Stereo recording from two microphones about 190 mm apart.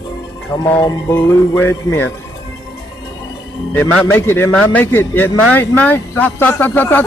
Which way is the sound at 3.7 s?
10° left (ahead or behind).